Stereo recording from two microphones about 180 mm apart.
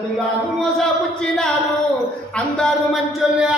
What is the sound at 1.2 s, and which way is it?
Speech, 5° left (ahead or behind).